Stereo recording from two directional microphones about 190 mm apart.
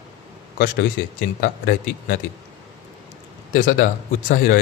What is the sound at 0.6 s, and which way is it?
A man's voice, 50° left (ahead or behind).